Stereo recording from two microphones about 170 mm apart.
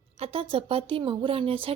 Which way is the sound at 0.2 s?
35° right (ahead or behind).